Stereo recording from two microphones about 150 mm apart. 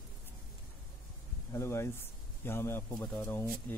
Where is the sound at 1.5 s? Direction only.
15° left (ahead or behind).